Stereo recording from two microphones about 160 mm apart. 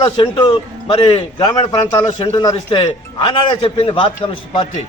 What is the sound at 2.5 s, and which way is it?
A man's voice, 30° left (ahead or behind).